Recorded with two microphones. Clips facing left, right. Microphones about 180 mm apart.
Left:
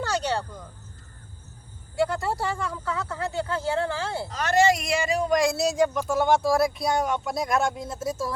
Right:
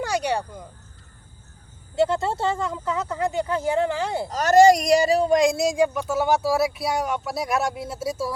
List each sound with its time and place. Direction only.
0.0 s cricket: 10° right (ahead or behind)
2.0 s speech: 25° right (ahead or behind)
4.3 s speech: 40° right (ahead or behind); by 8.3 s 10° right (ahead or behind)